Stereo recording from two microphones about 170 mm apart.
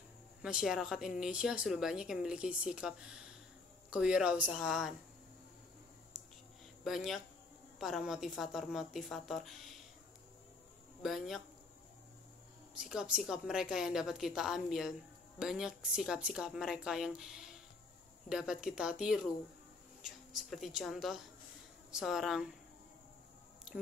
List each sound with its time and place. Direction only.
0.4 s a woman's voice: 5° right (ahead or behind)
6.8 s a woman's voice: centre (ahead or behind)
11.0 s a woman's voice: centre (ahead or behind)
12.7 s a woman's voice: 5° right (ahead or behind)